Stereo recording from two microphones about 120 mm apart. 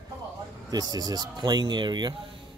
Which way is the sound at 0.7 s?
35° right (ahead or behind).